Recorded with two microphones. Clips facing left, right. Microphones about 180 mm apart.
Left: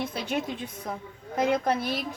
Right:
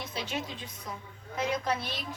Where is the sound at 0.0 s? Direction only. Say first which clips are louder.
Left 6 dB; 55° left (ahead or behind).